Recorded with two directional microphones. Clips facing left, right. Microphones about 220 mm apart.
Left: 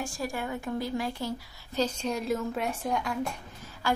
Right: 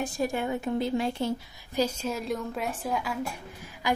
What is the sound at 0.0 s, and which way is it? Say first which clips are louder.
A woman's voice: right 5 dB; 20° right (ahead or behind).